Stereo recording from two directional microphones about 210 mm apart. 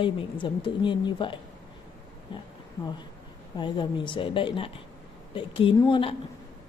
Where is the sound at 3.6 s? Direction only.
20° left (ahead or behind).